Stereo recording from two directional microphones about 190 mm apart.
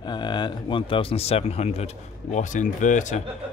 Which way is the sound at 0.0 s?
25° left (ahead or behind).